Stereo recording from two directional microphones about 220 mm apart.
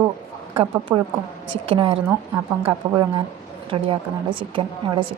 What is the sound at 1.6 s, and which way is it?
A woman's voice, 25° right (ahead or behind).